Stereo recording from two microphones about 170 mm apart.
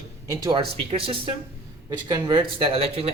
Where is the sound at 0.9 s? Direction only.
35° right (ahead or behind).